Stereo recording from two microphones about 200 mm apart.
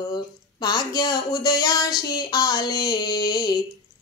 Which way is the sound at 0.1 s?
20° left (ahead or behind).